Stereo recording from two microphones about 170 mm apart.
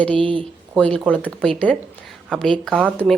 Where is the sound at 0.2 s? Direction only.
30° right (ahead or behind).